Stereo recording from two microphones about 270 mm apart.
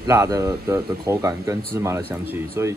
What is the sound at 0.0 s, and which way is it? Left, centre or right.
Speech, centre.